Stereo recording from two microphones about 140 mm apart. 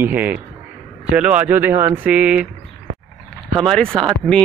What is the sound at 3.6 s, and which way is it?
Speech, 5° left (ahead or behind).